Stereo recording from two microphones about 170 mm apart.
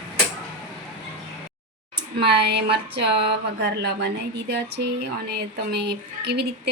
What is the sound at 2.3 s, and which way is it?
Speech, 75° right (ahead or behind).